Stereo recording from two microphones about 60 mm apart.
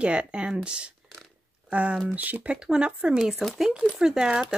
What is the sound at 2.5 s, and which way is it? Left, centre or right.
Speech, centre.